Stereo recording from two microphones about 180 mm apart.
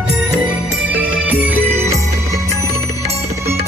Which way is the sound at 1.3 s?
10° right (ahead or behind).